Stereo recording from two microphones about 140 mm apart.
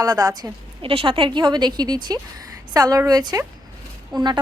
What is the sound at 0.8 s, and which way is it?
A woman's voice, 40° right (ahead or behind).